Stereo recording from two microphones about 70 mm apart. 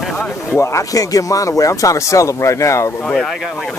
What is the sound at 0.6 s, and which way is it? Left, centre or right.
Speech, left.